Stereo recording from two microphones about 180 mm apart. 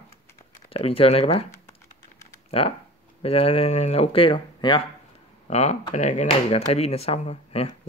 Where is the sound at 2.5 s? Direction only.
30° left (ahead or behind).